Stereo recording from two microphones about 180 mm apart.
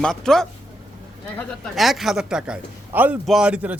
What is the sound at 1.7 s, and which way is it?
A man's voice, centre (ahead or behind).